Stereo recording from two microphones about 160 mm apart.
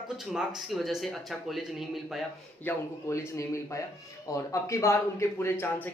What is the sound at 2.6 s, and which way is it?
Speech, 15° left (ahead or behind).